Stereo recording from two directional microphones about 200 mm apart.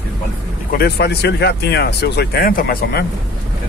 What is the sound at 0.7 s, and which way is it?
Speech, 55° left (ahead or behind).